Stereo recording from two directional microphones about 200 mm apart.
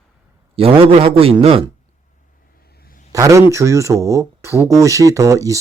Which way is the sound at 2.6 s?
50° left (ahead or behind).